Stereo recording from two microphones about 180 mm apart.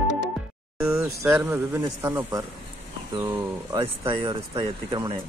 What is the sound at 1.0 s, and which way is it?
Speech, 15° right (ahead or behind).